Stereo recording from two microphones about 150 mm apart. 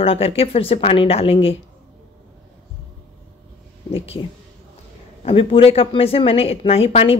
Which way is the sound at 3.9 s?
40° left (ahead or behind).